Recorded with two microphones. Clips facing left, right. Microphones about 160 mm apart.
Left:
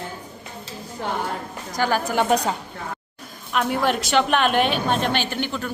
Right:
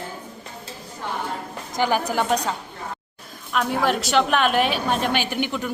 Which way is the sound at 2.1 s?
Centre (ahead or behind).